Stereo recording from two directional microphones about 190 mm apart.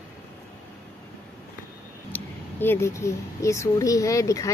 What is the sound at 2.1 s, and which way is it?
Speech, 10° left (ahead or behind).